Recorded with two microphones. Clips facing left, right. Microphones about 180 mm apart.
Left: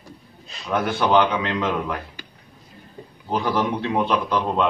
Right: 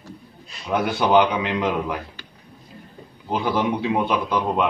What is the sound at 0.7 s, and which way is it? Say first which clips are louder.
A man's voice: right 1 dB; 15° right (ahead or behind).